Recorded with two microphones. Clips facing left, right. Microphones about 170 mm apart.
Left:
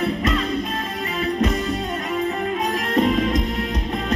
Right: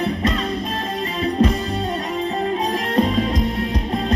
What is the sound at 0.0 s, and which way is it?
Music, 30° right (ahead or behind).